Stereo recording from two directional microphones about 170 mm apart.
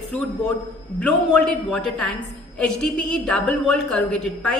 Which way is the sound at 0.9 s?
5° left (ahead or behind).